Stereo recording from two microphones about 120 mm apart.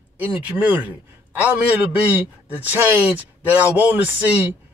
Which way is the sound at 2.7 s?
15° right (ahead or behind).